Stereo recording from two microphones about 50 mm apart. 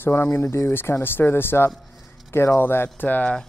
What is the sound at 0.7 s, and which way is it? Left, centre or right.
Speech, left.